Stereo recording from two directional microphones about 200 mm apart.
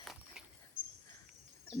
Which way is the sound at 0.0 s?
Centre (ahead or behind).